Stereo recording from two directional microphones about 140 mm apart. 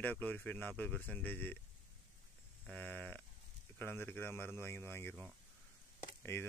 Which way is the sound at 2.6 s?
10° left (ahead or behind).